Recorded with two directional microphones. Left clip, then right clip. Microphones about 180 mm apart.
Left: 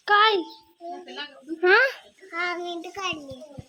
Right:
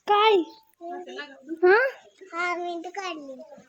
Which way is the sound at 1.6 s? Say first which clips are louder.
Left 1 dB; 20° right (ahead or behind).